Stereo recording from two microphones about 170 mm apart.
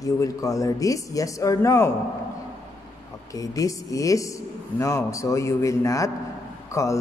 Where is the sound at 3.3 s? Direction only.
20° left (ahead or behind).